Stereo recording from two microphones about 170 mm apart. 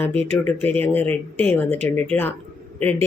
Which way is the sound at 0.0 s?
10° left (ahead or behind).